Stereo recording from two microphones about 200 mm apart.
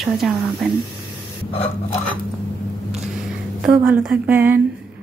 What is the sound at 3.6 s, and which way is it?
Speech, 10° right (ahead or behind).